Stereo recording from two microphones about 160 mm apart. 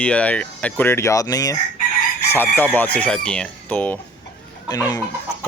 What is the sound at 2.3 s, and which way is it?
Speech, 10° left (ahead or behind).